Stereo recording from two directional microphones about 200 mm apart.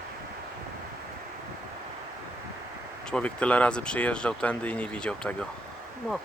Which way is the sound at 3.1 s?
5° left (ahead or behind).